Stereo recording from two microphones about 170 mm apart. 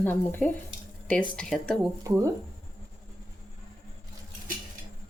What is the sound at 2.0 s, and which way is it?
Speech, 20° right (ahead or behind).